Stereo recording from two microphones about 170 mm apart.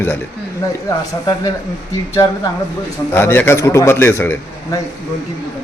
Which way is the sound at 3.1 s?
15° left (ahead or behind).